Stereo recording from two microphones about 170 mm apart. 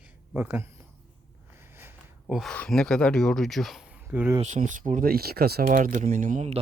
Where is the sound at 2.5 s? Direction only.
5° left (ahead or behind).